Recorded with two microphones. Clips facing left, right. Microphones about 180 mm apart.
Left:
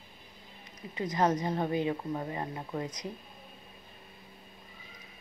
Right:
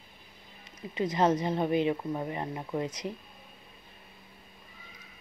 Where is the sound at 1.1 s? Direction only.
20° right (ahead or behind).